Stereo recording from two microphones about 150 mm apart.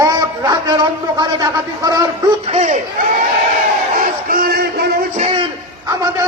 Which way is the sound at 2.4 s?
50° right (ahead or behind).